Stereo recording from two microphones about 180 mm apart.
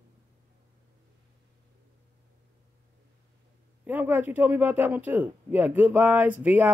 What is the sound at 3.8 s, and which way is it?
Speech, 10° right (ahead or behind).